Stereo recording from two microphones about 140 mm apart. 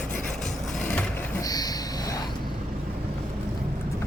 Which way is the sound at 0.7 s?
10° left (ahead or behind).